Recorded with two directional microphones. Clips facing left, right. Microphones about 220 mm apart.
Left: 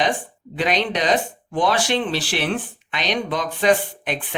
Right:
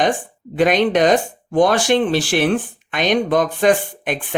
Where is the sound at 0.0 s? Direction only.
50° right (ahead or behind).